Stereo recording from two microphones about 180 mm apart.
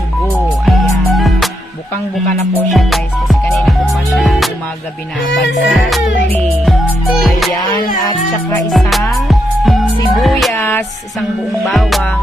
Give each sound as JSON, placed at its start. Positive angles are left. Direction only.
{"t": 0.4, "sound": "music", "side_deg": 0}
{"t": 2.7, "sound": "music", "side_deg": 0}
{"t": 6.1, "sound": "music", "side_deg": 75}
{"t": 6.7, "sound": "music", "side_deg": 0}
{"t": 8.7, "sound": "music", "side_deg": 0}
{"t": 10.5, "sound": "music", "side_deg": 10}
{"t": 11.6, "sound": "music", "side_deg": 0}